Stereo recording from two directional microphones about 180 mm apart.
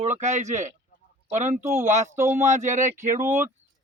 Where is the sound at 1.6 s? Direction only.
15° right (ahead or behind).